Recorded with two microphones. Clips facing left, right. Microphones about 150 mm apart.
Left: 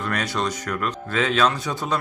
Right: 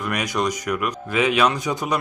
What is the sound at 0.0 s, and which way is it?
A man's voice, 15° right (ahead or behind).